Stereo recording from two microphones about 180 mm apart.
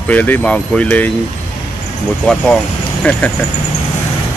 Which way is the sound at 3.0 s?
5° left (ahead or behind).